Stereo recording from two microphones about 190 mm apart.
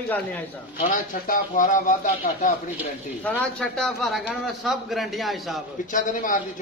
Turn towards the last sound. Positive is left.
turn(degrees=45)  # may be behind; listen again after turning